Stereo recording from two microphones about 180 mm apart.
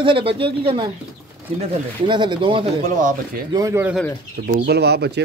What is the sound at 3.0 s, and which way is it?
Speech, 45° right (ahead or behind).